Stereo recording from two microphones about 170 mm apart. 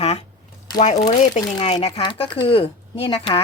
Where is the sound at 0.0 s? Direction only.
35° left (ahead or behind).